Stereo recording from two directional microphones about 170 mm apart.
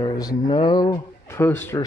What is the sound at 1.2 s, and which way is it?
Speech, 15° left (ahead or behind).